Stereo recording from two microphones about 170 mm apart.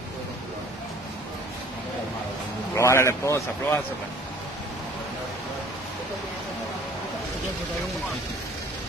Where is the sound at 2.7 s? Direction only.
15° left (ahead or behind).